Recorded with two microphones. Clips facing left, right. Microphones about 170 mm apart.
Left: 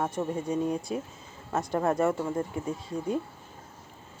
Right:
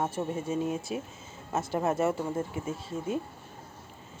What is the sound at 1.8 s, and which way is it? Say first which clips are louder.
Speech: left 2 dB; 25° right (ahead or behind).